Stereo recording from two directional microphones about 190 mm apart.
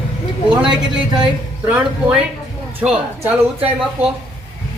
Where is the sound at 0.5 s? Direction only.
5° right (ahead or behind).